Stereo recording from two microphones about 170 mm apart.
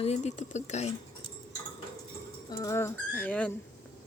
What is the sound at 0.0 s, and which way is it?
Speech, 40° left (ahead or behind).